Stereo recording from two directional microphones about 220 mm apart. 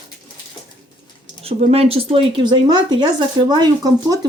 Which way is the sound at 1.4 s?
30° right (ahead or behind).